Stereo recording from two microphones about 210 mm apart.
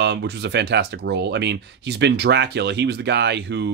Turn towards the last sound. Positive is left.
turn(degrees=-55)  # may be behind; listen again after turning